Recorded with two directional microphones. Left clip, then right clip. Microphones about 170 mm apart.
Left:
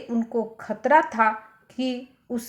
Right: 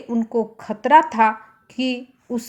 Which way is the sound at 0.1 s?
30° right (ahead or behind).